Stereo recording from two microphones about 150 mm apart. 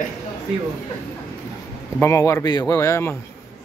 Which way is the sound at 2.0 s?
20° left (ahead or behind).